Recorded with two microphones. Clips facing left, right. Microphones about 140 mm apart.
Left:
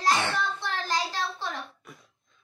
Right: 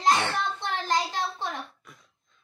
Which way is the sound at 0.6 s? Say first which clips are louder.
Right 2 dB; 20° right (ahead or behind).